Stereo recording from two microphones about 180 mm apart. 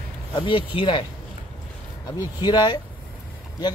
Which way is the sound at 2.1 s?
25° left (ahead or behind).